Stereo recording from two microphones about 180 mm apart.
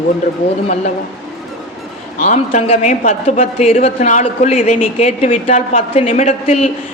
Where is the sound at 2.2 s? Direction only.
40° left (ahead or behind).